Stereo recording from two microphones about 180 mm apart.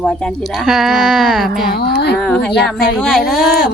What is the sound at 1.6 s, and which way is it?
Speech, 65° left (ahead or behind).